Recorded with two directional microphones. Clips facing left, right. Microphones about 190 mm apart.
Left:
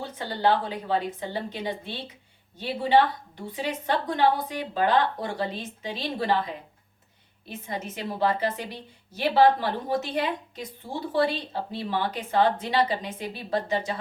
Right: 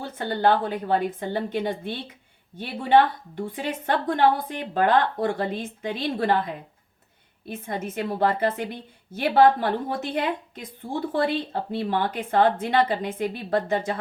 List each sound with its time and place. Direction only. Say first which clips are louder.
0.0 s a woman's voice: right 3 dB; 50° right (ahead or behind)
7.4 s a woman's voice: right 3 dB; 55° right (ahead or behind)